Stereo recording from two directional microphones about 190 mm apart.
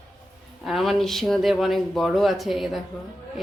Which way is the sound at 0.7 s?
Centre (ahead or behind).